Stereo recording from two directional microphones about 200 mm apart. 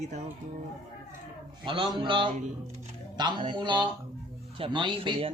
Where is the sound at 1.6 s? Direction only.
25° right (ahead or behind).